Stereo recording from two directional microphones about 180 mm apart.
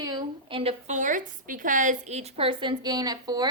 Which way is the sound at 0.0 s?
25° right (ahead or behind).